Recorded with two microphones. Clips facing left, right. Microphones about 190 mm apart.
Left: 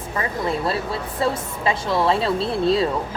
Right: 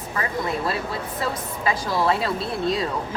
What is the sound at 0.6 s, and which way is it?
Speech, 30° left (ahead or behind).